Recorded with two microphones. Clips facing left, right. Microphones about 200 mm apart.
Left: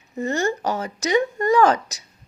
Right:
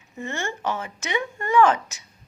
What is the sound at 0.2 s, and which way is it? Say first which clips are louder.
A woman's voice: left 7 dB; 40° left (ahead or behind).